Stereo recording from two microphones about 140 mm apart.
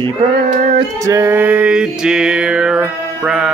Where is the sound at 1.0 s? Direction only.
20° right (ahead or behind); by 3.5 s 5° right (ahead or behind).